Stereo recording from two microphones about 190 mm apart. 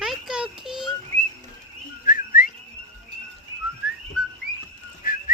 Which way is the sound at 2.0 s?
45° left (ahead or behind).